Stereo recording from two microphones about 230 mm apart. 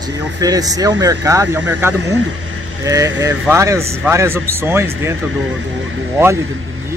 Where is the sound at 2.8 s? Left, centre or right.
Centre.